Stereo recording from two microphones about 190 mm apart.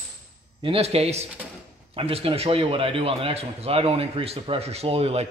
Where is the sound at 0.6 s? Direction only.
30° right (ahead or behind).